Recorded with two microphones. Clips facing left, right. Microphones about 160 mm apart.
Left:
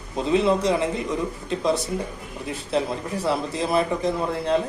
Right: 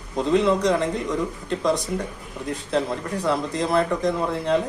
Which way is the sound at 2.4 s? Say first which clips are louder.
Right 1 dB; 5° left (ahead or behind).